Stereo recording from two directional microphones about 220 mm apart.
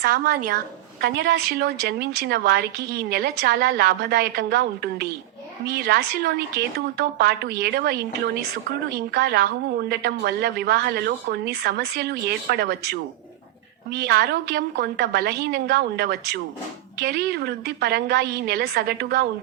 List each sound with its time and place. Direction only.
0.0 s a woman's voice: 45° right (ahead or behind)
1.0 s a woman's voice: 55° right (ahead or behind)